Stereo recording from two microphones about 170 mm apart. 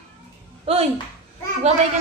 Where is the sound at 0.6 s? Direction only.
35° right (ahead or behind).